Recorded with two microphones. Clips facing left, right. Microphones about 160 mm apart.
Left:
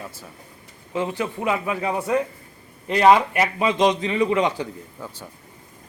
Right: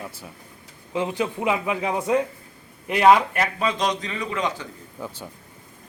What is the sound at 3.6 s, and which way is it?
A man's voice, 20° left (ahead or behind).